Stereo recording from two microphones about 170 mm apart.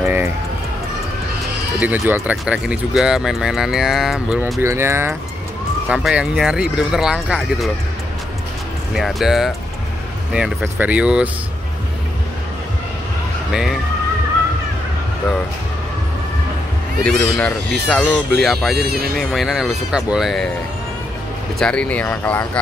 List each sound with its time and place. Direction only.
0.0 s run: 15° right (ahead or behind)
1.8 s speech: 10° right (ahead or behind)
5.9 s speech: centre (ahead or behind)
8.9 s speech: centre (ahead or behind)
13.5 s speech: 5° right (ahead or behind)
17.0 s speech: 5° left (ahead or behind)
18.8 s speech: 65° right (ahead or behind)
19.1 s speech: centre (ahead or behind)
21.5 s speech: 5° left (ahead or behind)